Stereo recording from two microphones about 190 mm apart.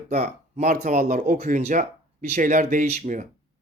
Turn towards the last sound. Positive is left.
turn(degrees=-40)  # may be behind; listen again after turning